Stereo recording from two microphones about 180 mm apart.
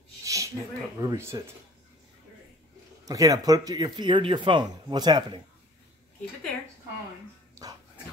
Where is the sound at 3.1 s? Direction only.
20° right (ahead or behind).